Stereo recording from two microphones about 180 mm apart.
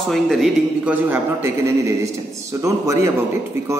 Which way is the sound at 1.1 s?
15° right (ahead or behind).